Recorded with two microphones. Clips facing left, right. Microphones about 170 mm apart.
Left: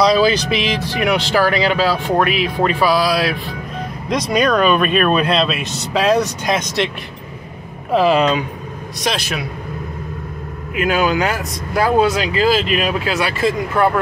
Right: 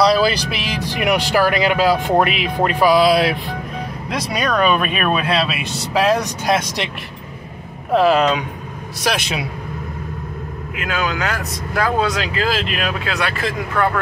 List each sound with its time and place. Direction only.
0.0 s speech: 5° right (ahead or behind)
2.6 s music: 15° right (ahead or behind)
4.1 s speech: 10° right (ahead or behind)
7.9 s speech: centre (ahead or behind)
10.8 s speech: 15° left (ahead or behind)